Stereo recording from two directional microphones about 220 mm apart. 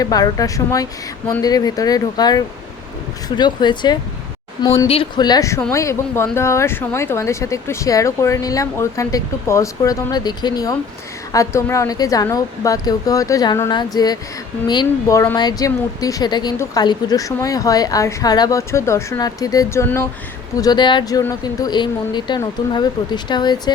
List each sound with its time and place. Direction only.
0.0 s speech: 15° left (ahead or behind)